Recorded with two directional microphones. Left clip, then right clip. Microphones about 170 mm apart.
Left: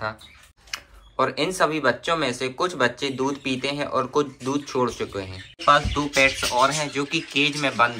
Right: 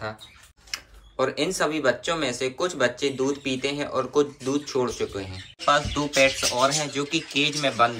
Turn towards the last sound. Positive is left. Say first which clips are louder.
# left 1 dB
turn(degrees=-15)  # may be behind; listen again after turning